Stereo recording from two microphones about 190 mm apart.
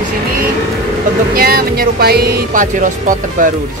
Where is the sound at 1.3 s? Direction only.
50° right (ahead or behind).